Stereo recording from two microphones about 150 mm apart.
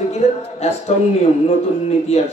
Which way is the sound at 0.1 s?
45° left (ahead or behind).